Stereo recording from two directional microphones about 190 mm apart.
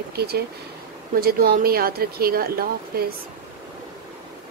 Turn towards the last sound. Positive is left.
turn(degrees=-50)  # may be behind; listen again after turning